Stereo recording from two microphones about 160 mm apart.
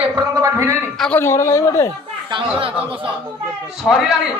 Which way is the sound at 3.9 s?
10° left (ahead or behind).